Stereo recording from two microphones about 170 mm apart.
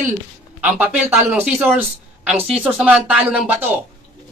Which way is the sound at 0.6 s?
10° right (ahead or behind).